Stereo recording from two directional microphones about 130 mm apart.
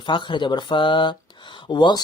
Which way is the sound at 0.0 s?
35° left (ahead or behind).